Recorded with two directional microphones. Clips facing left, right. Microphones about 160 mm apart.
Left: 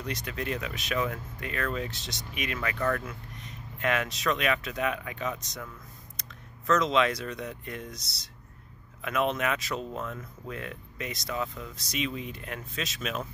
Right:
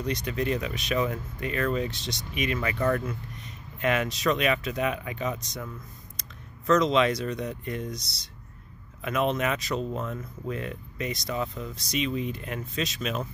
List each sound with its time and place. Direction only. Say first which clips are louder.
0.0 s speech: right 6 dB; centre (ahead or behind)
2.7 s speech: right 2 dB; 15° right (ahead or behind)
3.1 s speech: right 5 dB; centre (ahead or behind)
6.7 s speech: right 3 dB; centre (ahead or behind)
9.0 s speech: right 2 dB; centre (ahead or behind)